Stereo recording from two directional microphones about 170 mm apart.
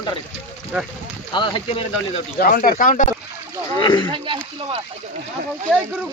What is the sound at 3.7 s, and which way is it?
Speech, 25° left (ahead or behind).